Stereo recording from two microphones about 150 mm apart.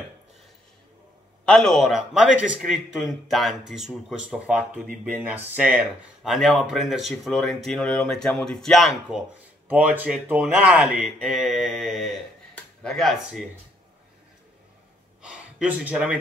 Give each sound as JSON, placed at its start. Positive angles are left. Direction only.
{"t": 1.4, "sound": "speech", "side_deg": 5}
{"t": 9.7, "sound": "speech", "side_deg": -10}
{"t": 15.2, "sound": "a sound", "side_deg": -10}